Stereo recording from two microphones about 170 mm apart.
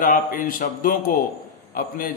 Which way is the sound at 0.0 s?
50° left (ahead or behind).